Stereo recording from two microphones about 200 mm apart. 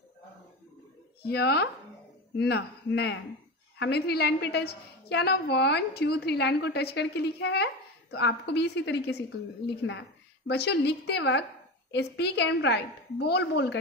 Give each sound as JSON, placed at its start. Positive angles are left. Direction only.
{"t": 1.2, "sound": "a woman's voice", "side_deg": 55}